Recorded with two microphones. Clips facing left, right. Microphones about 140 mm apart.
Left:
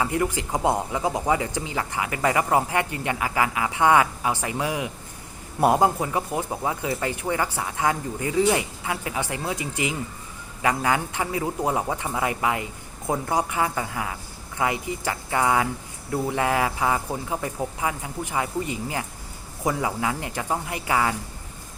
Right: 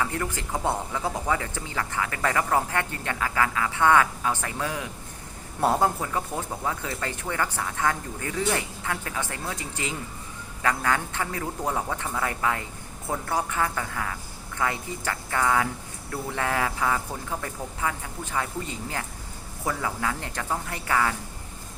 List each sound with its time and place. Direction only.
0.0 s speech: 15° left (ahead or behind)